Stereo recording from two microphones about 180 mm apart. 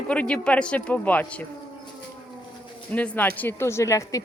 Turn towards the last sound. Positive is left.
turn(degrees=15)  # may be behind; listen again after turning